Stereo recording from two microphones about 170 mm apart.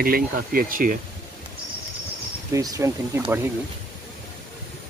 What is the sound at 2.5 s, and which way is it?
Speech, 20° right (ahead or behind).